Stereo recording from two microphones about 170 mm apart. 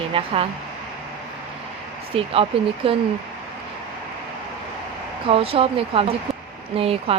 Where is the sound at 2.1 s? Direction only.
35° right (ahead or behind).